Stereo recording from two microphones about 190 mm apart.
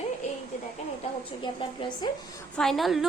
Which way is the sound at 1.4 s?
25° left (ahead or behind).